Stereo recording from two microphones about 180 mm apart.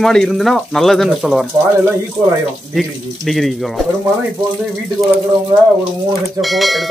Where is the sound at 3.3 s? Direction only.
Centre (ahead or behind).